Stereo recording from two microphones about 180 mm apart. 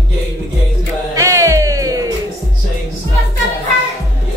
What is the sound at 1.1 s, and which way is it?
Music, 15° right (ahead or behind).